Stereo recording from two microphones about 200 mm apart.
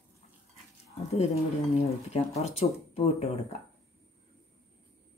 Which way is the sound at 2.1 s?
30° left (ahead or behind).